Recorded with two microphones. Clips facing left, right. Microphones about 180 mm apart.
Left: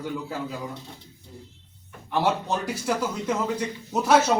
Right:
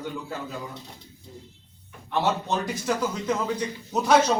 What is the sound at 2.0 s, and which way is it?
A man's voice, 10° left (ahead or behind).